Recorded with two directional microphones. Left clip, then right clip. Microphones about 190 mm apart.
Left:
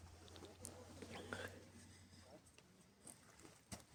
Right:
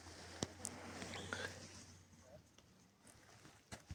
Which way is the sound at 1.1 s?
10° left (ahead or behind).